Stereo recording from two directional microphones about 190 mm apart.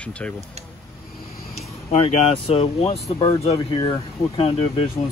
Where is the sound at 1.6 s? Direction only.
35° left (ahead or behind).